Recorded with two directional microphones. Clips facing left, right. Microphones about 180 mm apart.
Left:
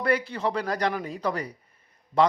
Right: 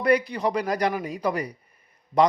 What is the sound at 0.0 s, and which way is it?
Speech, 15° right (ahead or behind).